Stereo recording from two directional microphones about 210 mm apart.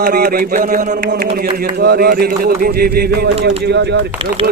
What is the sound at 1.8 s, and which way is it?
Speech, 50° right (ahead or behind).